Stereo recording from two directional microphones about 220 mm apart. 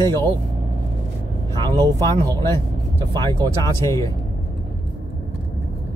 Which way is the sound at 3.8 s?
15° left (ahead or behind).